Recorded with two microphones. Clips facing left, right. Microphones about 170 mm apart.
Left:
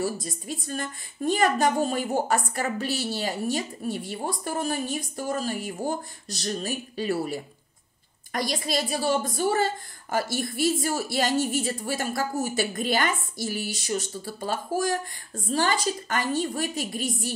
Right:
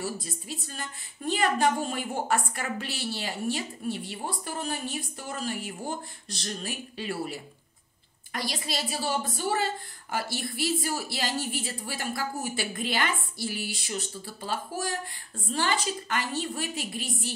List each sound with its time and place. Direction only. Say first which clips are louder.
0.0 s a woman's voice: left 5 dB; 45° left (ahead or behind)